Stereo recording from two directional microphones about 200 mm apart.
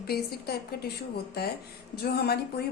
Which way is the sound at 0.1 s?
50° left (ahead or behind).